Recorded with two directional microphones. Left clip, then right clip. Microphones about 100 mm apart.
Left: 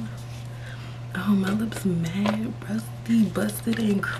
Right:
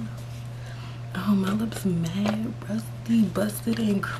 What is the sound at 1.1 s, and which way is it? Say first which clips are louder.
Speech: left 1 dB; 15° right (ahead or behind).